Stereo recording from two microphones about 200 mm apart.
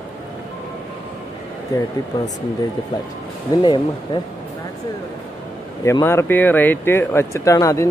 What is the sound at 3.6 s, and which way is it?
Speech, 25° left (ahead or behind).